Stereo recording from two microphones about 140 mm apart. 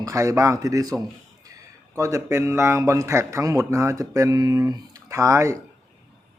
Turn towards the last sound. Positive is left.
turn(degrees=-20)  # may be behind; listen again after turning